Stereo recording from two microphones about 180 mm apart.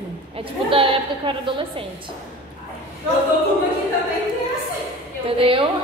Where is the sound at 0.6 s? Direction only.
30° right (ahead or behind).